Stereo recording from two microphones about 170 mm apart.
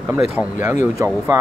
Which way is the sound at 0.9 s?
20° right (ahead or behind).